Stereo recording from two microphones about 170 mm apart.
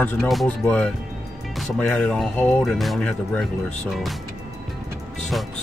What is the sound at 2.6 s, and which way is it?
Speech, centre (ahead or behind).